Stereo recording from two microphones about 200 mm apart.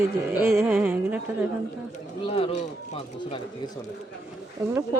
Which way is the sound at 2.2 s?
30° left (ahead or behind).